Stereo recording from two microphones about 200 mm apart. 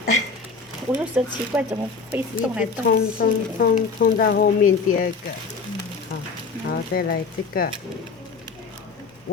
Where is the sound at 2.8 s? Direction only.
50° left (ahead or behind).